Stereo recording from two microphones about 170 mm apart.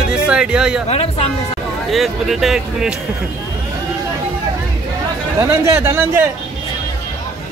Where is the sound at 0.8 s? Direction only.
35° left (ahead or behind).